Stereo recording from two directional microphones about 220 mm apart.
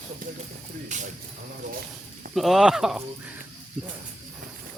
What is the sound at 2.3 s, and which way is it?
Speech, centre (ahead or behind).